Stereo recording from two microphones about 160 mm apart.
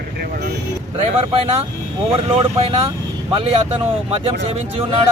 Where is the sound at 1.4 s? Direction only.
40° right (ahead or behind).